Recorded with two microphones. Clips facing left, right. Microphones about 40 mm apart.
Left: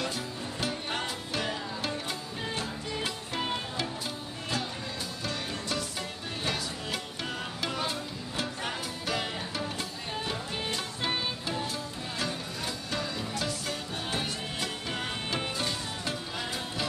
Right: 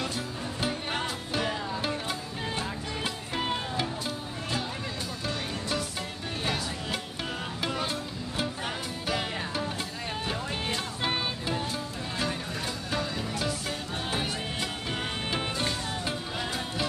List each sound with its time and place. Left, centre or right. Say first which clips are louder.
0.6 s music: right 2 dB; centre
5.2 s music: right 1 dB; centre